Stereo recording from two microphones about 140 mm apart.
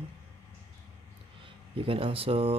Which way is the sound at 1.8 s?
40° right (ahead or behind).